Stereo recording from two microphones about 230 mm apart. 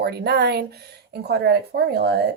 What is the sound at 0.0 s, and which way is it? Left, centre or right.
Speech, right.